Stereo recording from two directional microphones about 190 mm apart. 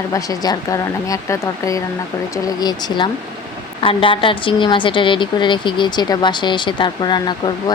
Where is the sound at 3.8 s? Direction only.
30° left (ahead or behind).